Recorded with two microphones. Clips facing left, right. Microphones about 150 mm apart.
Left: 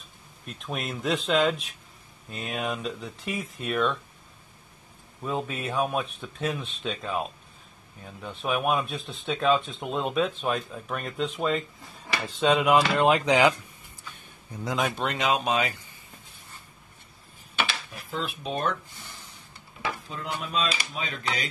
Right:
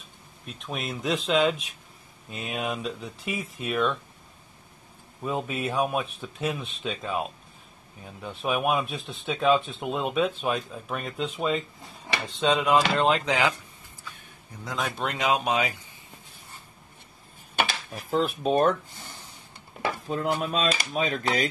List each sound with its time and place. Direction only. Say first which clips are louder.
0.5 s speech: even; centre (ahead or behind)
5.2 s speech: right 1 dB; 10° right (ahead or behind)
12.4 s speech: left 1 dB; 10° left (ahead or behind)
14.6 s speech: left 4 dB; 10° left (ahead or behind)
15.0 s speech: even; 10° right (ahead or behind)
17.6 s speech: right 3 dB; 45° right (ahead or behind)
19.8 s speech: right 6 dB; 45° right (ahead or behind)